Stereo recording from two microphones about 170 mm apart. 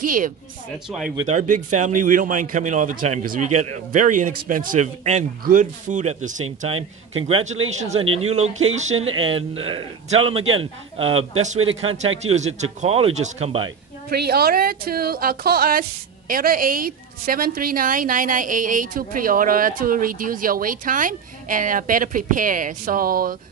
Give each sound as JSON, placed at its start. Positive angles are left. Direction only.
{"t": 0.0, "sound": "a woman's voice", "side_deg": -55}
{"t": 0.8, "sound": "speech", "side_deg": -5}
{"t": 1.2, "sound": "a woman's voice", "side_deg": -45}
{"t": 7.2, "sound": "speech", "side_deg": -35}
{"t": 14.1, "sound": "a woman's voice", "side_deg": -65}